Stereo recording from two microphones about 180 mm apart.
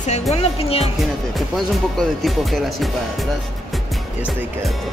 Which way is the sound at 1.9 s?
Centre (ahead or behind).